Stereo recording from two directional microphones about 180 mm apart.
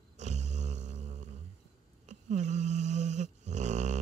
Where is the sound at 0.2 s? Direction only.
40° right (ahead or behind).